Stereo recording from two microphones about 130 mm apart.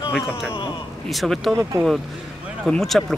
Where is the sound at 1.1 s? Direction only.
Centre (ahead or behind).